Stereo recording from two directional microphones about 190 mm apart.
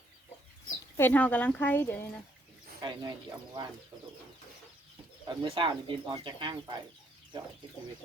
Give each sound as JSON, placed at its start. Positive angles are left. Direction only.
{"t": 0.9, "sound": "speech", "side_deg": 10}
{"t": 2.8, "sound": "speech", "side_deg": -20}
{"t": 5.2, "sound": "speech", "side_deg": -25}